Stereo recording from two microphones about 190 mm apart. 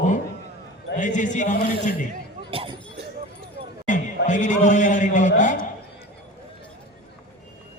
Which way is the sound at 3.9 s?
40° left (ahead or behind).